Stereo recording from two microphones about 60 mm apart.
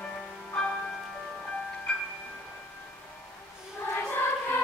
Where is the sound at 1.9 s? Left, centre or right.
Centre.